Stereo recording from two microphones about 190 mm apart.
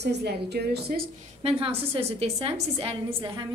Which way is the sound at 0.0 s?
60° right (ahead or behind).